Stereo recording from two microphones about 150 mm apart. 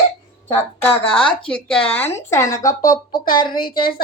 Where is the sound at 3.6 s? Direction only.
85° left.